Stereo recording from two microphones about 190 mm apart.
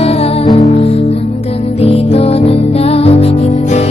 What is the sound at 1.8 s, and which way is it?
Music, 30° left (ahead or behind).